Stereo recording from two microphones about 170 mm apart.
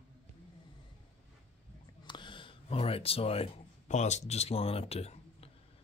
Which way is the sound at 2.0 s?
25° left (ahead or behind).